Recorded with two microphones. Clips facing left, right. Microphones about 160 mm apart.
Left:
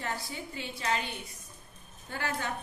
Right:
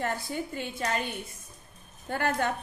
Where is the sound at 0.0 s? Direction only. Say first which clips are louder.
Right 6 dB; 50° right (ahead or behind).